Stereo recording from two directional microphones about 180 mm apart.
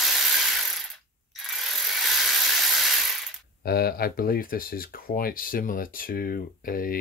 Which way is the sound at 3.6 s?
55° left (ahead or behind).